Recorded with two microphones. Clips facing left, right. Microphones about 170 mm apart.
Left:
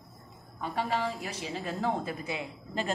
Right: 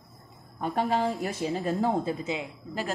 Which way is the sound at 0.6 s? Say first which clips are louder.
Right 5 dB; 45° right (ahead or behind).